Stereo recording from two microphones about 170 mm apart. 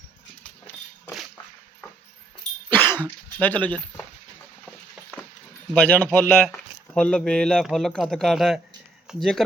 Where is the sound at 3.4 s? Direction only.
10° left (ahead or behind).